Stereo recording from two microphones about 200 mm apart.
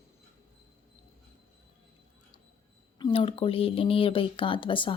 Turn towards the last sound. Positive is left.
turn(degrees=25)  # may be behind; listen again after turning